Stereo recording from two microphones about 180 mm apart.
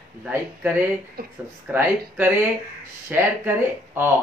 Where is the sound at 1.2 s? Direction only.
55° right (ahead or behind).